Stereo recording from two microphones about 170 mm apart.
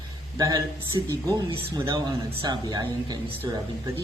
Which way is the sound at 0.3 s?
20° right (ahead or behind).